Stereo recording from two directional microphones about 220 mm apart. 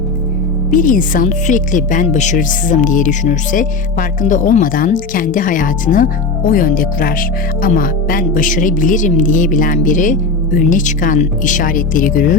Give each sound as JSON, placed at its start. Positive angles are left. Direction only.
{"t": 0.7, "sound": "speech", "side_deg": 35}